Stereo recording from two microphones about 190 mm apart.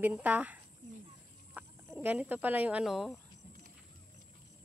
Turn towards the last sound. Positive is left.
turn(degrees=0)  # may be behind; listen again after turning